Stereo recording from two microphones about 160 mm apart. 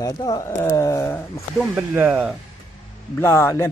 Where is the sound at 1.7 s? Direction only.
10° right (ahead or behind).